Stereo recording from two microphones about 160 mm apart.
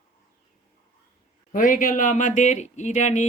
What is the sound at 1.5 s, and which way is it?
A woman's voice, 55° left (ahead or behind).